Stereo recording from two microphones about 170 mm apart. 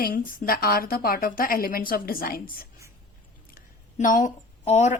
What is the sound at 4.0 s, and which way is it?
Speech, 50° left (ahead or behind).